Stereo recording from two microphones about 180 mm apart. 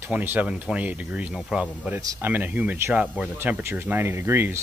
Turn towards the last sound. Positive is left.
turn(degrees=-10)  # may be behind; listen again after turning